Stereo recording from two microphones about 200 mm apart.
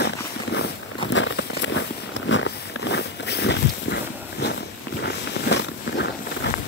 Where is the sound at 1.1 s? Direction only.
65° left (ahead or behind).